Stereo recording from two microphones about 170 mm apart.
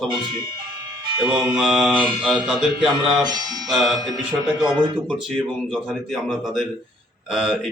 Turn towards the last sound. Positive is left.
turn(degrees=0)  # may be behind; listen again after turning